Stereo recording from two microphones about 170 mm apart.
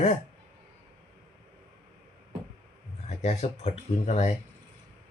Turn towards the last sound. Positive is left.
turn(degrees=40)  # may be behind; listen again after turning